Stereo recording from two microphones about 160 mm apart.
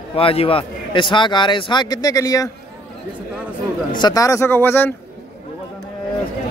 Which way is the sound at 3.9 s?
25° left (ahead or behind).